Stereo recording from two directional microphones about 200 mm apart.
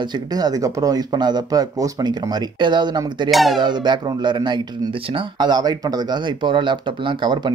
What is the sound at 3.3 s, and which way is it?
Speech, centre (ahead or behind).